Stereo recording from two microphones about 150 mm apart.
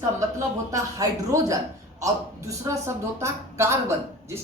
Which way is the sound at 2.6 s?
20° right (ahead or behind).